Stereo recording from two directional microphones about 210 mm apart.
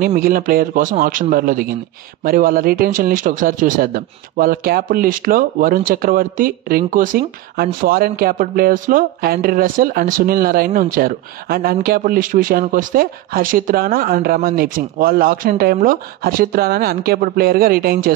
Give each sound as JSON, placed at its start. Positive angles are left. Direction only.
{"t": 0.0, "sound": "speech", "side_deg": -45}